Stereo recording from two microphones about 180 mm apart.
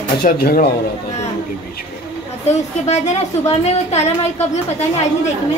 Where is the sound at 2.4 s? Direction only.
40° left (ahead or behind).